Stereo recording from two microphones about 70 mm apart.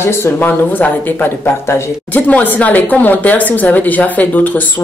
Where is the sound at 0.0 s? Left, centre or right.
Left.